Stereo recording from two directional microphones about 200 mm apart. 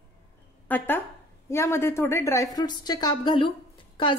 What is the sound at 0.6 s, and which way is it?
A woman's voice, 10° left (ahead or behind).